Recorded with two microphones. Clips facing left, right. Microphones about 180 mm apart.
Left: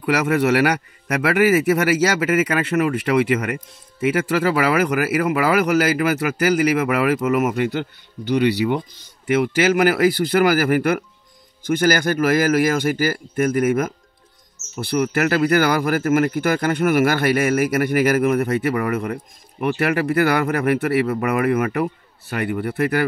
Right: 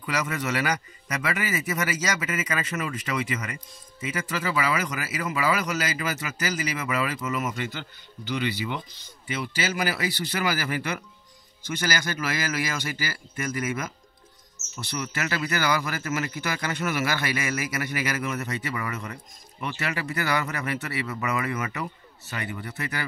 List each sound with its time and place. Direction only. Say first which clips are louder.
0.0 s speech: left 11 dB; 65° left (ahead or behind)